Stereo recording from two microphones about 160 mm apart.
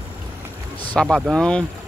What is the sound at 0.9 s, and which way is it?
Speech, centre (ahead or behind).